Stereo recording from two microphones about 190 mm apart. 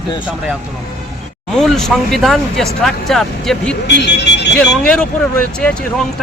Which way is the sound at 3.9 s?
60° left (ahead or behind).